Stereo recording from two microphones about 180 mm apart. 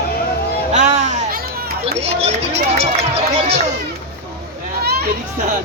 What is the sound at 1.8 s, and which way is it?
Speech, 35° right (ahead or behind).